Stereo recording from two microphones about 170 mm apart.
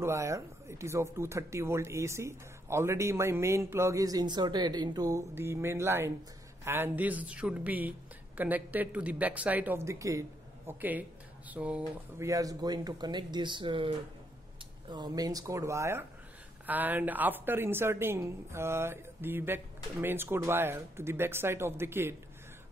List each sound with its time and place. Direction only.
0.0 s speech: 15° right (ahead or behind)
12.2 s speech: 20° right (ahead or behind)